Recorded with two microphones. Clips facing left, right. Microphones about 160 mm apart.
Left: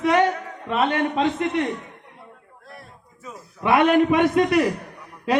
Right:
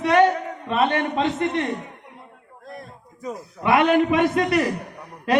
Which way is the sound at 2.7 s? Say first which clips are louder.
Right 6 dB; 40° right (ahead or behind).